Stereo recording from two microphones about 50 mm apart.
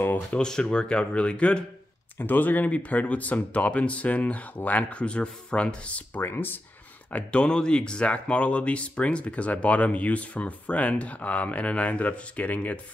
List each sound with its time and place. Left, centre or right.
0.4 s speech: centre
2.1 s speech: left
6.2 s speech: left
7.1 s speech: left